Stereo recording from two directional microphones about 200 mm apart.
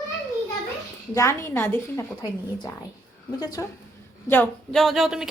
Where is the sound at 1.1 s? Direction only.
15° left (ahead or behind).